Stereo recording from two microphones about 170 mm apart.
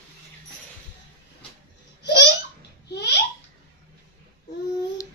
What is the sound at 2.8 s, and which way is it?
Babbling, 85° left.